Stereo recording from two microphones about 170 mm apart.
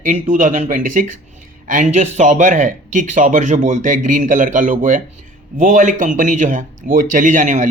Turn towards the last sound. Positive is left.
turn(degrees=-50)  # may be behind; listen again after turning